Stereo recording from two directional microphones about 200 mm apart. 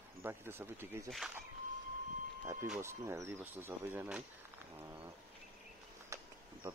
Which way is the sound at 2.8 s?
15° right (ahead or behind).